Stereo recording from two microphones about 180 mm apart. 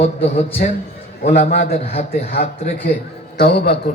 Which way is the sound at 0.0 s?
35° left (ahead or behind).